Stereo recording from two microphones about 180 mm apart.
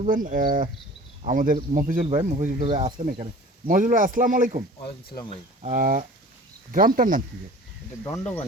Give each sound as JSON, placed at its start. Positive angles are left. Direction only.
{"t": 0.0, "sound": "speech", "side_deg": -45}
{"t": 3.7, "sound": "speech", "side_deg": -45}
{"t": 5.6, "sound": "speech", "side_deg": -45}
{"t": 8.0, "sound": "speech", "side_deg": 15}